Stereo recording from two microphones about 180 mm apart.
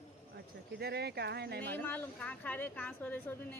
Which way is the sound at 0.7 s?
65° right (ahead or behind).